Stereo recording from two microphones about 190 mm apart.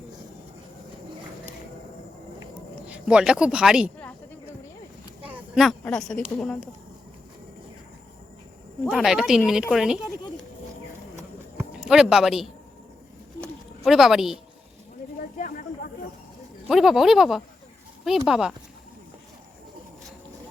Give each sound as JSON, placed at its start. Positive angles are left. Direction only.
{"t": 2.8, "sound": "speech", "side_deg": -5}
{"t": 5.2, "sound": "a sound", "side_deg": -5}
{"t": 8.9, "sound": "speech", "side_deg": -5}
{"t": 11.2, "sound": "a sound", "side_deg": -10}
{"t": 11.8, "sound": "speech", "side_deg": -5}
{"t": 13.8, "sound": "speech", "side_deg": 0}
{"t": 15.4, "sound": "snake", "side_deg": 45}
{"t": 16.6, "sound": "speech", "side_deg": 0}